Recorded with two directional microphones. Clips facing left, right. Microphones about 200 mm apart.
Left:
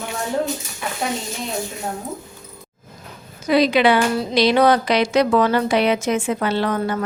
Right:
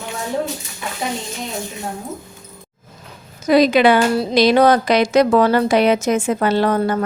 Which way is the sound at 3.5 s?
45° right (ahead or behind).